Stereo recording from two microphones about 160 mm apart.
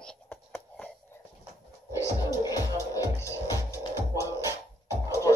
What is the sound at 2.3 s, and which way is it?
Music, 20° left (ahead or behind).